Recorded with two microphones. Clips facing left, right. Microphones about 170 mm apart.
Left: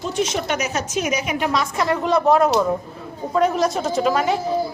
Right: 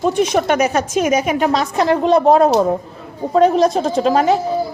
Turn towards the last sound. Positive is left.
turn(degrees=-35)  # may be behind; listen again after turning